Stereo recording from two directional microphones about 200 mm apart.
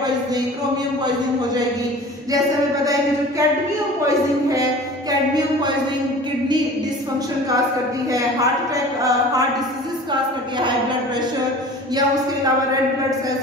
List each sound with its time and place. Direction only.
2.8 s speech: 15° right (ahead or behind)